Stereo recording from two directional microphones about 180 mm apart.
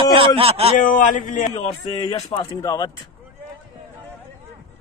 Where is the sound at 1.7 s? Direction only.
25° left (ahead or behind).